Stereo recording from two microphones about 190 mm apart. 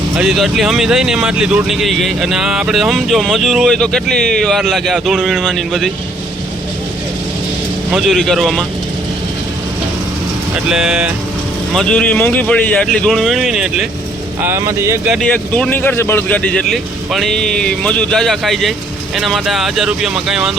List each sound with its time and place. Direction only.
0.2 s speech: centre (ahead or behind)
7.9 s speech: centre (ahead or behind)
10.7 s speech: 5° right (ahead or behind)
14.4 s speech: 15° right (ahead or behind)
15.1 s speech: 5° left (ahead or behind)